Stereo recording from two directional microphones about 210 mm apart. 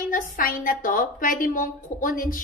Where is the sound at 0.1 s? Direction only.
45° left (ahead or behind).